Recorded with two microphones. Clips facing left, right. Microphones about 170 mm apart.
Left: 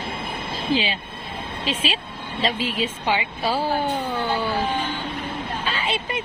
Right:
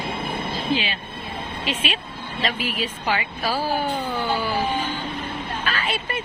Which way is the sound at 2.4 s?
25° left (ahead or behind).